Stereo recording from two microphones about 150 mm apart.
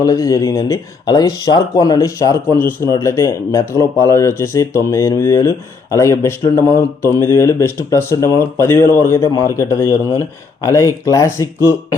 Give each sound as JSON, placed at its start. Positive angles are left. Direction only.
{"t": 0.0, "sound": "speech", "side_deg": 20}